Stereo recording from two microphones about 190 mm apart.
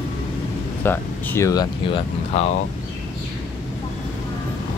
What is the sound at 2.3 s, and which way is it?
Speech, 30° left (ahead or behind).